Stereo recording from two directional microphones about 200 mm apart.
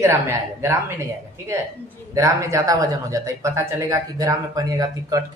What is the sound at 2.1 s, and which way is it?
Speech, 15° right (ahead or behind).